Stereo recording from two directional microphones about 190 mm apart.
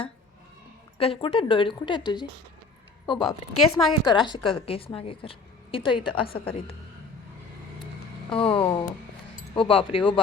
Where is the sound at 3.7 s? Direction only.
20° left (ahead or behind).